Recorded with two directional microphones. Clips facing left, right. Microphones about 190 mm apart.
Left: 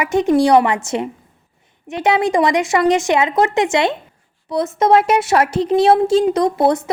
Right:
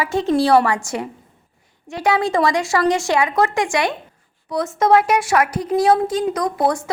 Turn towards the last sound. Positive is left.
turn(degrees=20)  # may be behind; listen again after turning